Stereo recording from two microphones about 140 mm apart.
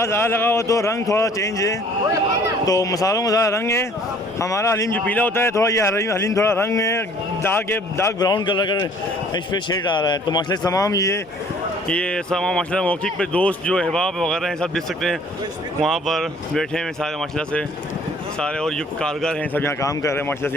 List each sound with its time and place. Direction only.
0.0 s speech: 20° left (ahead or behind)
8.2 s speech: 35° left (ahead or behind)
11.9 s a man's voice: 5° left (ahead or behind)